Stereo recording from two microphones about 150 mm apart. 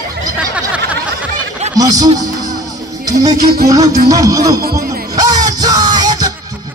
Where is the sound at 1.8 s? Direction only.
25° right (ahead or behind).